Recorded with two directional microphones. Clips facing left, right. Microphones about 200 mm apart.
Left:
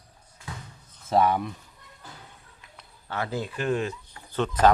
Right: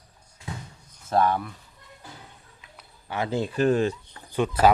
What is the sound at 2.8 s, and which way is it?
Speech, 15° right (ahead or behind).